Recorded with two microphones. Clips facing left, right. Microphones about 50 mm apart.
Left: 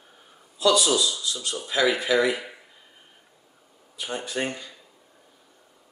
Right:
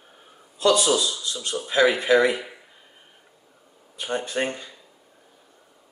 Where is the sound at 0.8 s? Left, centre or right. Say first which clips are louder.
Right 1 dB; centre.